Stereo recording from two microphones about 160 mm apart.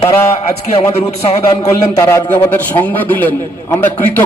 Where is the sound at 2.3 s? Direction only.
10° left (ahead or behind).